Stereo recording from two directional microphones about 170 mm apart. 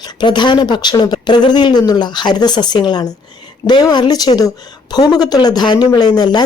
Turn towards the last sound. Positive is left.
turn(degrees=25)  # may be behind; listen again after turning